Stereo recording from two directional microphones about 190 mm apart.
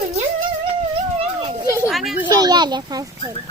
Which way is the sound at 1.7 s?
15° right (ahead or behind).